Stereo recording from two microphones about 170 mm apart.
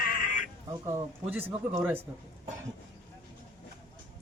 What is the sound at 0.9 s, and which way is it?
A man's voice, 10° right (ahead or behind).